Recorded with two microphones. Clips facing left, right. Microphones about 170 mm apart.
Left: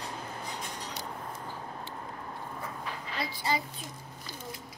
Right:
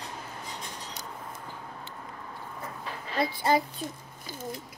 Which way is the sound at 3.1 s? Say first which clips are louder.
Right 7 dB; 50° right (ahead or behind).